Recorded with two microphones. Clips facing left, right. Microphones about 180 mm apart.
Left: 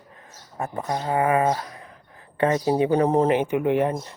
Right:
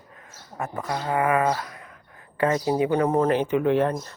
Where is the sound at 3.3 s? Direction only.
15° left (ahead or behind).